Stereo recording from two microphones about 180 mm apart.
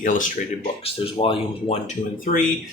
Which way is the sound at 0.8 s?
30° left (ahead or behind).